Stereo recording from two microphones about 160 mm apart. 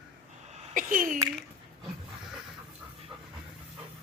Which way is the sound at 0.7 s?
60° right (ahead or behind).